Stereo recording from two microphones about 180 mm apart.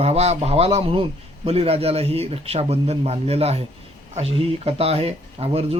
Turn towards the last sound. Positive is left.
turn(degrees=-35)  # may be behind; listen again after turning